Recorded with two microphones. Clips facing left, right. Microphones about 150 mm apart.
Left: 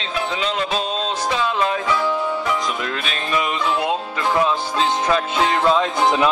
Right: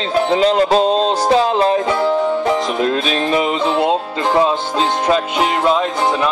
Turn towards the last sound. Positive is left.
turn(degrees=-20)  # may be behind; listen again after turning